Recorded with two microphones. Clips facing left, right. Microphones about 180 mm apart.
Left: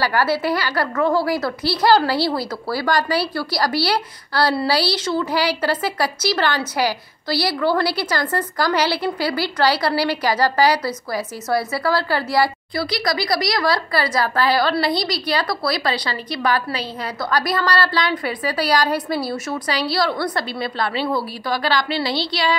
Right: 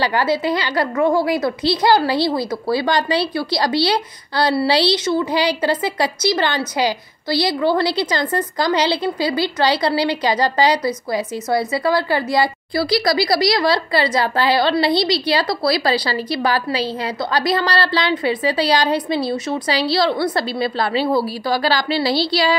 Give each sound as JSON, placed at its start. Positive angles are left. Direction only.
{"t": 0.0, "sound": "a woman's voice", "side_deg": -20}
{"t": 12.7, "sound": "a woman's voice", "side_deg": -30}